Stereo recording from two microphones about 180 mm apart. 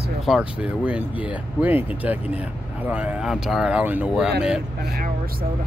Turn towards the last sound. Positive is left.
turn(degrees=-5)  # may be behind; listen again after turning